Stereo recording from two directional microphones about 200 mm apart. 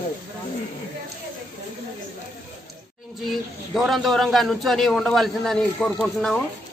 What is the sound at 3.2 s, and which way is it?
A man's voice, centre (ahead or behind).